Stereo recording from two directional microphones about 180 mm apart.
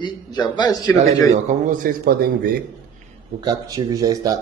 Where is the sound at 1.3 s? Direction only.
45° right (ahead or behind).